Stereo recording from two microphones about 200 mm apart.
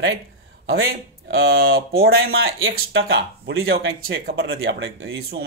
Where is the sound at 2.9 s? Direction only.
60° right (ahead or behind).